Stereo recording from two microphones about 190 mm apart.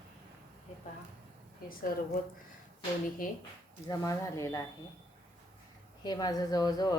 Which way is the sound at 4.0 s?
15° left (ahead or behind).